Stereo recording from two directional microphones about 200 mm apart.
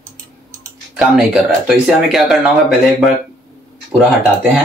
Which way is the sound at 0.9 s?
5° right (ahead or behind).